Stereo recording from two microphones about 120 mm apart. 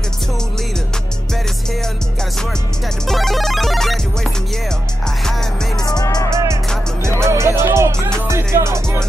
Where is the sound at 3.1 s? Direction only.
Centre (ahead or behind).